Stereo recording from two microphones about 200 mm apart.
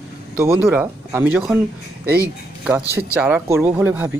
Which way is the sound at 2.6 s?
5° right (ahead or behind).